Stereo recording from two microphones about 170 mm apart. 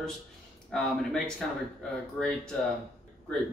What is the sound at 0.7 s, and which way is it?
Speech, centre (ahead or behind).